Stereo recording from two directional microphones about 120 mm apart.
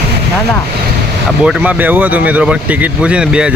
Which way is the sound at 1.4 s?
10° right (ahead or behind).